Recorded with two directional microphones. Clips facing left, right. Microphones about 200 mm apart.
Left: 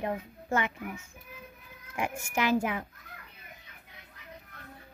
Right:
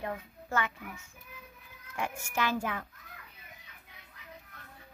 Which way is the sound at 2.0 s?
15° left (ahead or behind).